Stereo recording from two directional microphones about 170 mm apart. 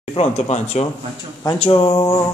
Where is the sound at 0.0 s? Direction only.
35° left (ahead or behind).